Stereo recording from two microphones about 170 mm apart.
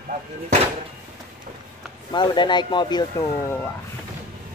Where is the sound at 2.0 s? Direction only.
25° left (ahead or behind).